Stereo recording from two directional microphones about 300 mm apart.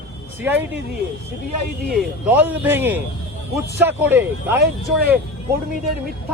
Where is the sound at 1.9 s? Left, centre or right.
Centre.